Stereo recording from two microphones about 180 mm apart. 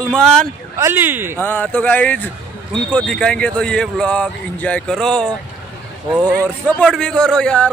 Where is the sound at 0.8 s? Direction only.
15° right (ahead or behind).